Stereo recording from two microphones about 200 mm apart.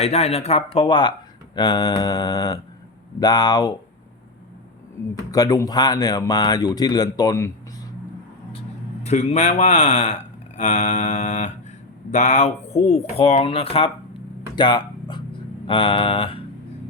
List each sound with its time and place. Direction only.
0.0 s speech: 30° left (ahead or behind)
5.3 s speech: 20° left (ahead or behind)
9.0 s speech: 35° left (ahead or behind)
14.5 s a sound: 20° left (ahead or behind)